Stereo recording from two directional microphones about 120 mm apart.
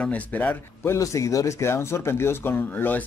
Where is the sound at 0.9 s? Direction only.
25° left (ahead or behind).